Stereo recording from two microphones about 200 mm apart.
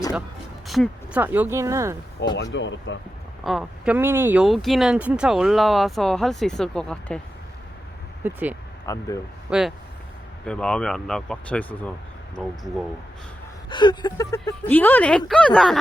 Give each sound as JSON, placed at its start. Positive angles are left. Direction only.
{"t": 0.7, "sound": "speech", "side_deg": -5}
{"t": 2.3, "sound": "speech", "side_deg": 65}
{"t": 3.4, "sound": "speech", "side_deg": 0}
{"t": 8.2, "sound": "speech", "side_deg": -10}
{"t": 8.9, "sound": "speech", "side_deg": 20}
{"t": 9.5, "sound": "speech", "side_deg": 0}
{"t": 13.7, "sound": "speech", "side_deg": 20}